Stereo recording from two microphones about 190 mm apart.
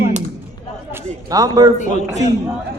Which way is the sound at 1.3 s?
20° right (ahead or behind).